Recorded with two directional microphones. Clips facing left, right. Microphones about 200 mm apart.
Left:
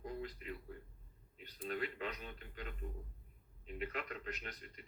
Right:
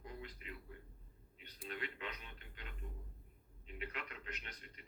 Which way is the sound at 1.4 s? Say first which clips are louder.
Left 6 dB; 40° left (ahead or behind).